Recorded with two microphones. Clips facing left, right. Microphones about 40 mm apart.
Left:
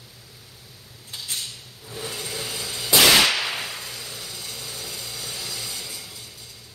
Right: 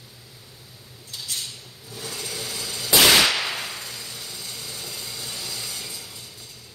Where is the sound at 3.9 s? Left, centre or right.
Left.